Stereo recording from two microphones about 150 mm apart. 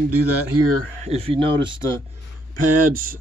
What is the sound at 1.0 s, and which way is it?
Speech, 40° right (ahead or behind).